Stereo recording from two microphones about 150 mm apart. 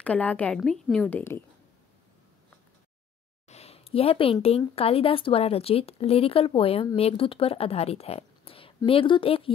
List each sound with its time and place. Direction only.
0.0 s a woman's voice: 10° left (ahead or behind)
3.4 s a woman's voice: 45° left (ahead or behind)